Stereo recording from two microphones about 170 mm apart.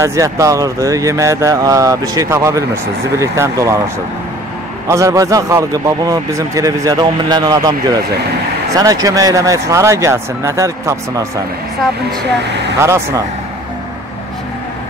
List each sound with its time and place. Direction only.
0.0 s speech: 15° right (ahead or behind)
4.8 s speech: 20° right (ahead or behind)
8.7 s speech: 20° right (ahead or behind)
12.8 s speech: 15° right (ahead or behind)